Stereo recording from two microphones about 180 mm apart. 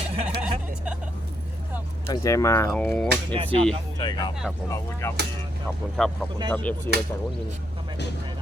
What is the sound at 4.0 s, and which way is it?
Speech, 25° left (ahead or behind).